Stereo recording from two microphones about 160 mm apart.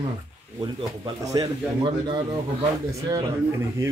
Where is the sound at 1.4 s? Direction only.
30° right (ahead or behind).